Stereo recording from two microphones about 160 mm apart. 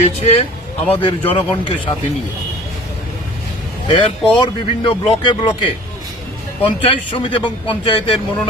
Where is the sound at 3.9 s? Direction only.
30° left (ahead or behind).